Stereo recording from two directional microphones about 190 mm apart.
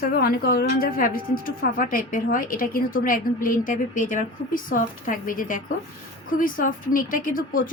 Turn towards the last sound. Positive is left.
turn(degrees=45)  # may be behind; listen again after turning